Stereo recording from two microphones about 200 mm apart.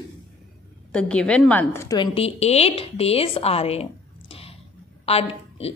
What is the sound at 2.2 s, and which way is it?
A woman's voice, 30° left (ahead or behind).